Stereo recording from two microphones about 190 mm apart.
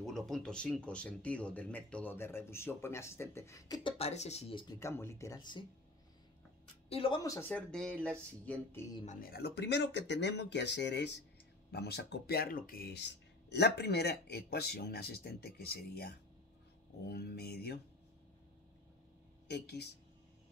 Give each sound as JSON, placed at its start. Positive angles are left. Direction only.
{"t": 0.0, "sound": "speech", "side_deg": 0}
{"t": 4.0, "sound": "speech", "side_deg": 35}
{"t": 6.9, "sound": "speech", "side_deg": 30}
{"t": 9.0, "sound": "speech", "side_deg": 45}
{"t": 19.4, "sound": "speech", "side_deg": 60}